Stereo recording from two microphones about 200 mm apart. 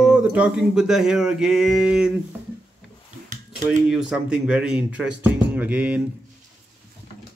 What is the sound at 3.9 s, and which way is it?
Speech, 5° right (ahead or behind).